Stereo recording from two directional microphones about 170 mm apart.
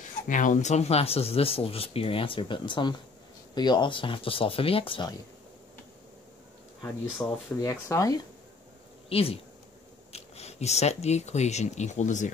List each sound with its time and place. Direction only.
0.3 s speech: 50° left (ahead or behind); by 5.1 s 30° left (ahead or behind)
7.2 s speech: 15° left (ahead or behind)
9.1 s speech: 35° left (ahead or behind)